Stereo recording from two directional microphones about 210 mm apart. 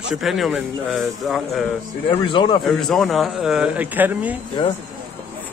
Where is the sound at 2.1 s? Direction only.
25° left (ahead or behind).